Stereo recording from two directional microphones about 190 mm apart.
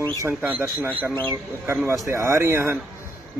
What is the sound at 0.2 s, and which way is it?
A man's voice, 10° right (ahead or behind).